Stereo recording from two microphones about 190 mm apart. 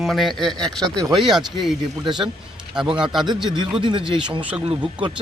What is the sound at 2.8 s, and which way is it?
Speech, 5° right (ahead or behind).